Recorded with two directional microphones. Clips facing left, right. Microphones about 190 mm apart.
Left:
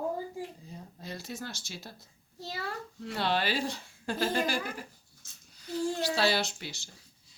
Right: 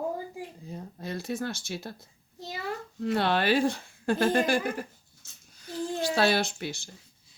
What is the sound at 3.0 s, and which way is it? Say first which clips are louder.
Speech: right 5 dB; 55° right (ahead or behind).